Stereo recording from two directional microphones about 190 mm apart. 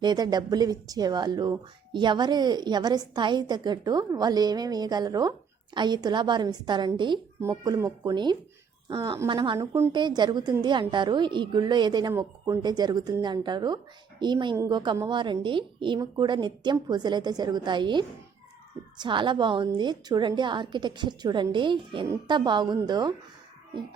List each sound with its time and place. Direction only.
0.0 s speech: 20° right (ahead or behind)